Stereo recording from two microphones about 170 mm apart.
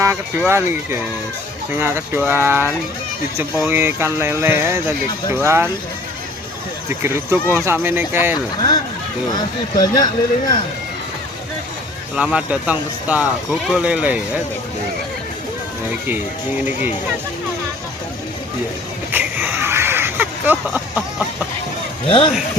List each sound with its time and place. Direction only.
0.0 s speech: 15° right (ahead or behind)
6.8 s speech: 15° right (ahead or behind)
9.7 s speech: 25° left (ahead or behind)
12.1 s speech: 5° right (ahead or behind)
15.9 s speech: 10° right (ahead or behind)
19.1 s a sound: 10° right (ahead or behind)